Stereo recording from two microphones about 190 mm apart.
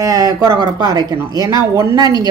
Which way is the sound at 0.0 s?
20° right (ahead or behind).